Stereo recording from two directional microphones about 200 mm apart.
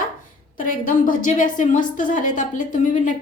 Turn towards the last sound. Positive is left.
turn(degrees=40)  # may be behind; listen again after turning